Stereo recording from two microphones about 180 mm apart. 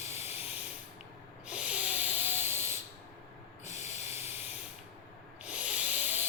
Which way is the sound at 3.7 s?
40° left (ahead or behind).